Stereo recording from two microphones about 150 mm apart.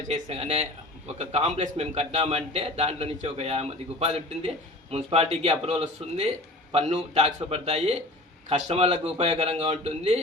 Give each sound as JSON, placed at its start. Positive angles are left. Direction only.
{"t": 0.1, "sound": "a man's voice", "side_deg": -45}